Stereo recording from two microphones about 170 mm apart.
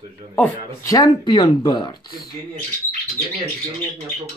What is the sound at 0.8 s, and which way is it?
Speech, 20° left (ahead or behind).